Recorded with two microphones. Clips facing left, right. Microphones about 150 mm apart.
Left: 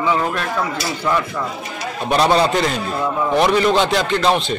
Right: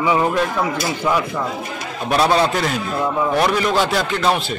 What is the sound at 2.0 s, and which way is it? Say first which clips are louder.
A man's voice: left 1 dB; centre (ahead or behind).